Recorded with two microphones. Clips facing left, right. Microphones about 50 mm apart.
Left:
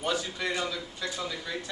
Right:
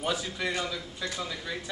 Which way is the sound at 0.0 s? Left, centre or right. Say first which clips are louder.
Even; centre.